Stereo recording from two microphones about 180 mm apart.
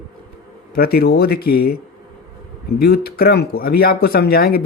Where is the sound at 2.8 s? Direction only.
60° left (ahead or behind).